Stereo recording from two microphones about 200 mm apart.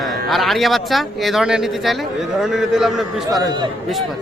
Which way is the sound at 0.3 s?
Centre (ahead or behind).